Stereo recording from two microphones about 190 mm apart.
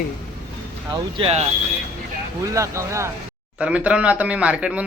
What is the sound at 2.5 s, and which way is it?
Speech, 15° right (ahead or behind).